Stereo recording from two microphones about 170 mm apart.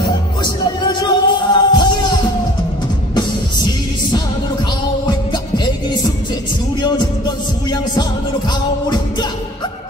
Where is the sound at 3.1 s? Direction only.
25° left (ahead or behind).